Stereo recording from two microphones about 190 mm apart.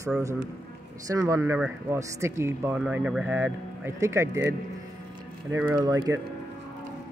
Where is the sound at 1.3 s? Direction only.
15° right (ahead or behind).